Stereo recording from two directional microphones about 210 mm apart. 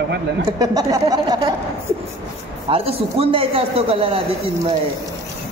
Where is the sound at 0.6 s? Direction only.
15° right (ahead or behind).